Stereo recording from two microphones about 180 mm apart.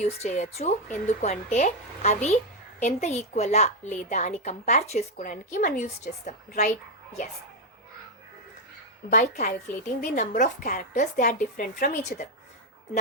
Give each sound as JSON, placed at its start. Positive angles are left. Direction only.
{"t": 0.0, "sound": "a woman's voice", "side_deg": 40}
{"t": 9.0, "sound": "a woman's voice", "side_deg": 40}